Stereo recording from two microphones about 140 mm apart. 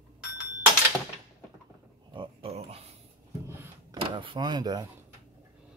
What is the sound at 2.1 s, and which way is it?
Pig, 40° right (ahead or behind).